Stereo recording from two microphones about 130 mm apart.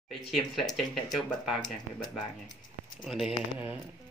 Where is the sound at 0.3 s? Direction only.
Centre (ahead or behind).